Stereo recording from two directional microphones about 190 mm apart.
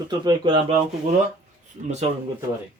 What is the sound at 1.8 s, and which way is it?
Speech, 35° right (ahead or behind).